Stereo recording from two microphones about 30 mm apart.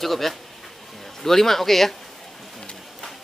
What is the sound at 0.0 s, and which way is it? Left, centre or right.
Speech, centre.